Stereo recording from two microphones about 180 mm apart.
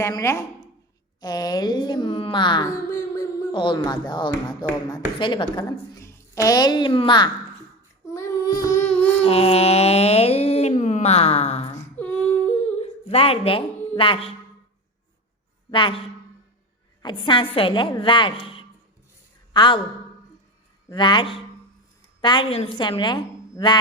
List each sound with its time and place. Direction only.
0.0 s a woman's voice: 15° left (ahead or behind)
8.0 s child singing: 15° left (ahead or behind)
9.0 s a sound: 35° left (ahead or behind)
11.9 s humming: 10° left (ahead or behind)
12.8 s a woman's voice: 35° left (ahead or behind)
15.7 s a woman's voice: 25° left (ahead or behind)
17.0 s a woman's voice: 25° left (ahead or behind)
20.9 s a woman's voice: 25° left (ahead or behind)